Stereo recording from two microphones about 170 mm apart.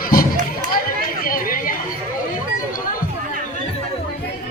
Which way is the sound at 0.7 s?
60° left (ahead or behind).